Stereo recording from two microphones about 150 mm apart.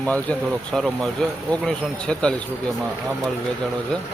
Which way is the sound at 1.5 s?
5° left (ahead or behind).